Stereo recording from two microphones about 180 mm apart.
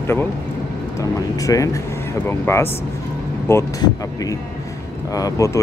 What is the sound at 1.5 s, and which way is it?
Speech, 15° left (ahead or behind).